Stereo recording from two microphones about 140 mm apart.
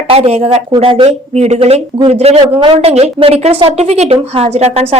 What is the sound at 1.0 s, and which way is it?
Speech, 50° right (ahead or behind).